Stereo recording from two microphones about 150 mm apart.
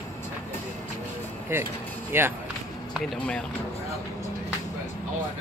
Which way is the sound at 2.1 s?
15° right (ahead or behind).